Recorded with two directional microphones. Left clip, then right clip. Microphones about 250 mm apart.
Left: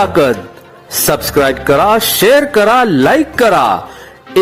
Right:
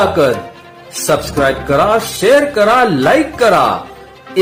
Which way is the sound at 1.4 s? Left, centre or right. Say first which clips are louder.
Left 4 dB; left.